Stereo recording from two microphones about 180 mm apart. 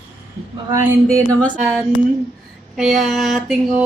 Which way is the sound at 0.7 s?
15° right (ahead or behind).